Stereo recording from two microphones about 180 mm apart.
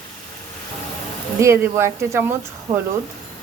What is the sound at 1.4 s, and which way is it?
Speech, 15° right (ahead or behind).